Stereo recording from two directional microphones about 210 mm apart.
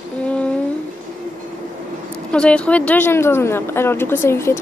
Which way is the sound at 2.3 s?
5° left (ahead or behind).